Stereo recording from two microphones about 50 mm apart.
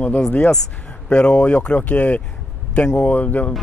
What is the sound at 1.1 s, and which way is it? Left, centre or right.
Speech, left.